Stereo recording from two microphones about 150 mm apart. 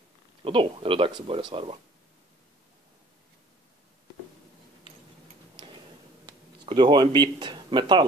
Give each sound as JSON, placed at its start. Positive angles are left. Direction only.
{"t": 0.4, "sound": "speech", "side_deg": -35}
{"t": 6.2, "sound": "speech", "side_deg": -30}